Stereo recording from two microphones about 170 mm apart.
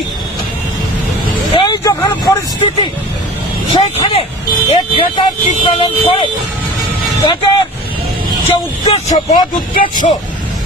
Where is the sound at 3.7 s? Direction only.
35° left (ahead or behind).